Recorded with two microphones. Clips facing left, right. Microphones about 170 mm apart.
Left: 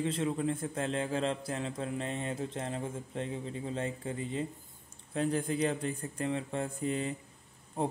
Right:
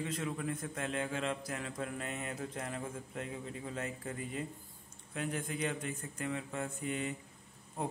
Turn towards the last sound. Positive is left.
turn(degrees=30)  # may be behind; listen again after turning